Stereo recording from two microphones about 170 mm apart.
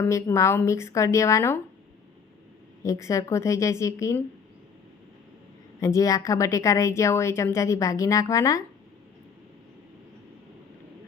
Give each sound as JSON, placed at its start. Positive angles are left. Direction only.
{"t": 0.0, "sound": "a woman's voice", "side_deg": 15}
{"t": 2.8, "sound": "a woman's voice", "side_deg": 20}
{"t": 5.8, "sound": "a woman's voice", "side_deg": 20}